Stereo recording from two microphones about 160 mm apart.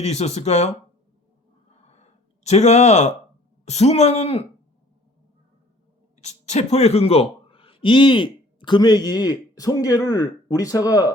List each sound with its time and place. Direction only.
0.0 s speech: 40° left (ahead or behind)
1.9 s a sound: 45° left (ahead or behind)
3.7 s speech: 40° left (ahead or behind)
6.2 s speech: 45° left (ahead or behind); by 11.1 s 20° left (ahead or behind)